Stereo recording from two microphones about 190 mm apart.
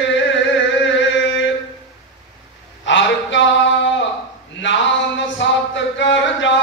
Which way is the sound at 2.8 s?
75° left (ahead or behind).